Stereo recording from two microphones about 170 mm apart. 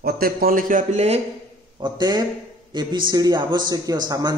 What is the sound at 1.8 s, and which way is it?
A man's voice, 25° right (ahead or behind).